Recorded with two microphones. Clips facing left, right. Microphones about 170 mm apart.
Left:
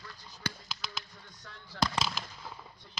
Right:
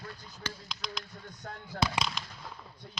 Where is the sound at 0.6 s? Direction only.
5° left (ahead or behind).